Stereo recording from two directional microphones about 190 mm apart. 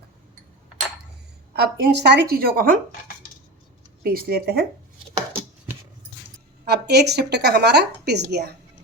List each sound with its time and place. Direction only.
1.5 s a woman's voice: 60° right (ahead or behind)
4.0 s a woman's voice: 50° right (ahead or behind)
6.7 s a woman's voice: 60° right (ahead or behind)